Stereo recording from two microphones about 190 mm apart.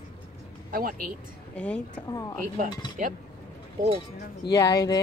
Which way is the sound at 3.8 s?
45° right (ahead or behind).